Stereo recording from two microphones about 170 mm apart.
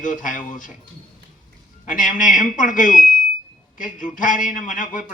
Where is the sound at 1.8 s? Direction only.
50° left (ahead or behind).